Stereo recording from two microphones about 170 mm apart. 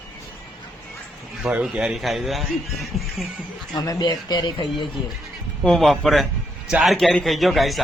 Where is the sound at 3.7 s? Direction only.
25° left (ahead or behind).